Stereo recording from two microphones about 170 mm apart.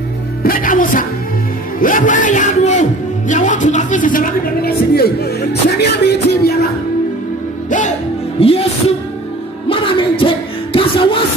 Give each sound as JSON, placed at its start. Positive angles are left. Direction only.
{"t": 0.4, "sound": "a man's voice", "side_deg": 55}
{"t": 8.4, "sound": "music", "side_deg": 35}